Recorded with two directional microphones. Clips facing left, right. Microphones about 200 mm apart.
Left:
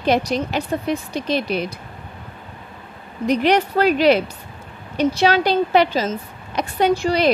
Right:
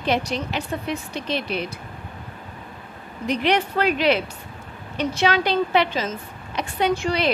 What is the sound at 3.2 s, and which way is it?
A woman's voice, 40° left (ahead or behind).